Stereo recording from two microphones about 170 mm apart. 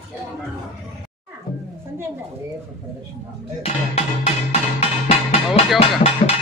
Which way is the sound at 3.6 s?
40° left (ahead or behind).